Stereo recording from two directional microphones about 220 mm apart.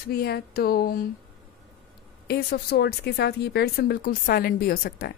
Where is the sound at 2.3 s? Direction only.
45° left (ahead or behind).